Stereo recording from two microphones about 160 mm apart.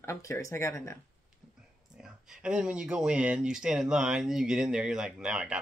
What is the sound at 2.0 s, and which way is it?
Speech, 5° right (ahead or behind).